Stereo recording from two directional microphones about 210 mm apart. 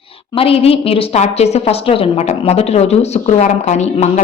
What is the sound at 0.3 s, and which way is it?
A woman's voice, 25° left (ahead or behind).